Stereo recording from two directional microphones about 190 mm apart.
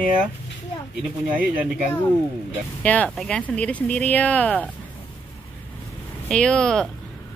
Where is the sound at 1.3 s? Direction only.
5° right (ahead or behind).